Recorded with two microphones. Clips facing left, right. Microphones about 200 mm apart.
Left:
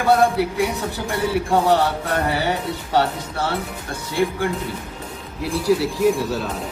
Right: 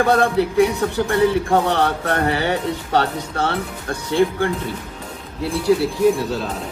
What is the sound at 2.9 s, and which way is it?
Speech, 65° right (ahead or behind).